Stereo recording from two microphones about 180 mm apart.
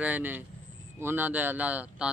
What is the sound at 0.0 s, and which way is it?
Speech, 10° right (ahead or behind).